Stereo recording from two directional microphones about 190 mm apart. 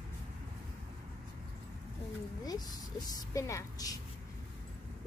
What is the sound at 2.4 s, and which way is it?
A woman's voice, 20° left (ahead or behind).